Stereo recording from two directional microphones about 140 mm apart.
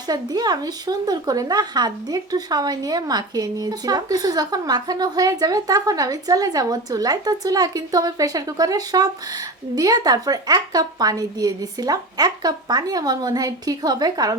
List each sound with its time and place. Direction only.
0.1 s speech: 30° right (ahead or behind)